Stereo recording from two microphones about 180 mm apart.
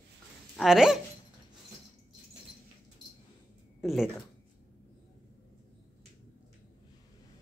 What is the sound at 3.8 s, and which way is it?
Speech, centre (ahead or behind).